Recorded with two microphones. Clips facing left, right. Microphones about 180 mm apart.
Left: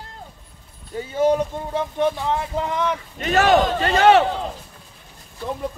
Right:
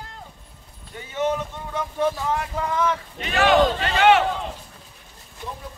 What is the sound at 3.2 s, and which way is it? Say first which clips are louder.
A man's voice: left 2 dB; 40° left (ahead or behind).